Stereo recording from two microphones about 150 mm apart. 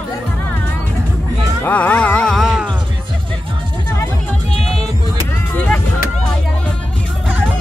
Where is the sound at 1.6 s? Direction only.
10° left (ahead or behind).